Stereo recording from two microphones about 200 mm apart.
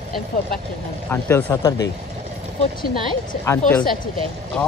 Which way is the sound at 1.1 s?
10° left (ahead or behind).